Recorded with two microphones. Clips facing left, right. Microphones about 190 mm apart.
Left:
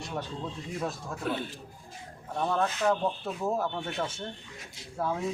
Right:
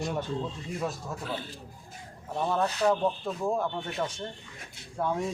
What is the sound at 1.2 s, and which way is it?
Speech, 55° left (ahead or behind).